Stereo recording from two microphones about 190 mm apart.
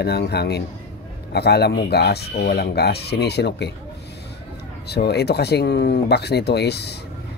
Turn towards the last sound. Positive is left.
turn(degrees=60)  # may be behind; listen again after turning